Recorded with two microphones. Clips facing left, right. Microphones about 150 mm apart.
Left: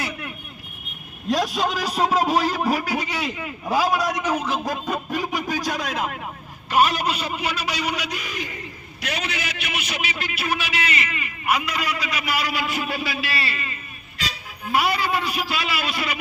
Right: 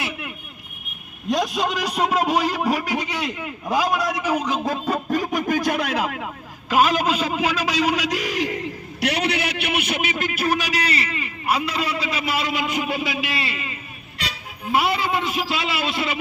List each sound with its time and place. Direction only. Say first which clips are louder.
0.0 s vehicle: even; 5° right (ahead or behind)
1.3 s speech: even; centre (ahead or behind); by 4.9 s 25° right (ahead or behind)
5.1 s a man's voice: right 5 dB; 45° right (ahead or behind); by 6.2 s 75° right (ahead or behind)
6.7 s a man's voice: right 2 dB; 90° right; by 16.1 s 25° right (ahead or behind)